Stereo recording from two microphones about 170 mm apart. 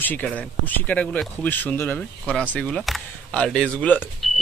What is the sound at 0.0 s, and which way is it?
Speech, 10° left (ahead or behind).